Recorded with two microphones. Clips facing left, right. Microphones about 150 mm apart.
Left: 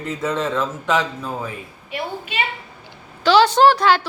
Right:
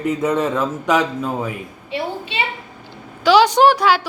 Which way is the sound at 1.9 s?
25° right (ahead or behind).